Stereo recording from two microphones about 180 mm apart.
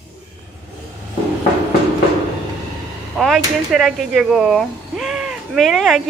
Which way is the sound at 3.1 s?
Centre (ahead or behind).